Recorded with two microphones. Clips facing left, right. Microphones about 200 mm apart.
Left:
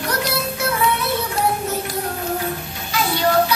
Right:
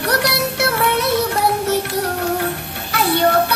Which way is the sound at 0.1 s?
75° right (ahead or behind).